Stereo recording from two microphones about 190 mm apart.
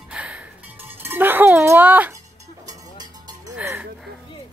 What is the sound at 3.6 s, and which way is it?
Music, 10° right (ahead or behind).